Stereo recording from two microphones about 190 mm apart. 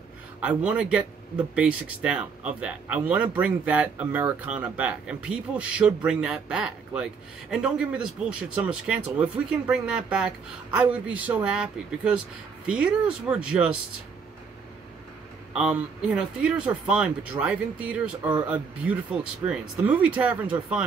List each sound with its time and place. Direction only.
0.4 s speech: 5° right (ahead or behind)
15.5 s speech: 5° right (ahead or behind)
19.4 s speech: 5° right (ahead or behind)